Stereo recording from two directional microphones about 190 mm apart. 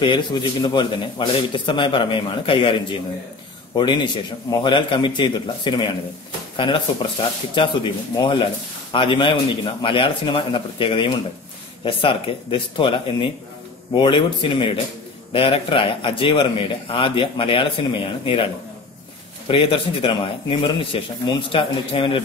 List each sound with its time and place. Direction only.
0.0 s a man's voice: 25° left (ahead or behind)